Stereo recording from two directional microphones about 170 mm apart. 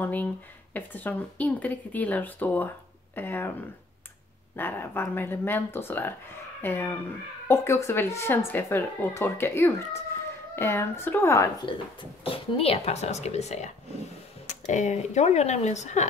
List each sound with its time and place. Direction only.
0.0 s speech: 10° left (ahead or behind)
4.6 s speech: 10° left (ahead or behind)
11.6 s speech: 30° left (ahead or behind)